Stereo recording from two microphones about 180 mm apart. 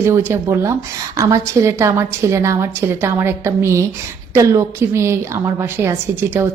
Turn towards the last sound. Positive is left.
turn(degrees=-15)  # may be behind; listen again after turning